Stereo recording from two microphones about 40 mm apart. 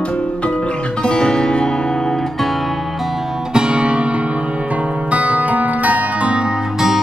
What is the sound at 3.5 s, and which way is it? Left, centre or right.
Music, right.